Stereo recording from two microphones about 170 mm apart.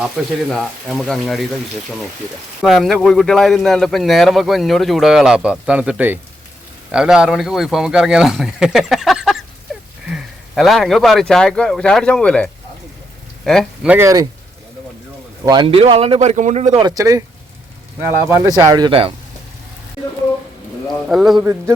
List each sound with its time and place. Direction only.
0.0 s speech: centre (ahead or behind)
2.6 s speech: centre (ahead or behind)
13.8 s speech: 15° right (ahead or behind)
15.4 s speech: 30° right (ahead or behind)
16.8 s speech: 20° right (ahead or behind)
18.3 s speech: 20° right (ahead or behind)
21.1 s speech: centre (ahead or behind)